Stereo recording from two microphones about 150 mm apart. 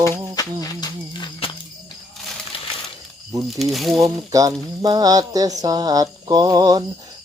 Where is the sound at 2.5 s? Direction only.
40° left (ahead or behind).